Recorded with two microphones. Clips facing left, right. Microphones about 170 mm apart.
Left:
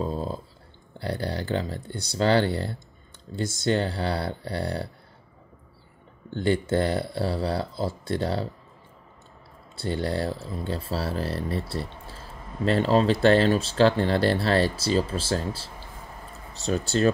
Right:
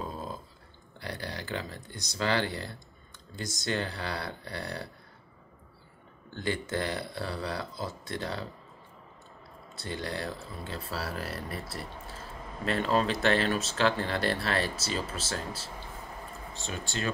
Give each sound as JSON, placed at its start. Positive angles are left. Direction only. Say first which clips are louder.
{"t": 0.0, "sound": "a sound", "louder": "left 8 dB", "side_deg": 30}
{"t": 0.9, "sound": "speech", "louder": "left 9 dB", "side_deg": 30}
{"t": 6.3, "sound": "speech", "louder": "left 9 dB", "side_deg": 30}
{"t": 9.8, "sound": "speech", "louder": "left 8 dB", "side_deg": 30}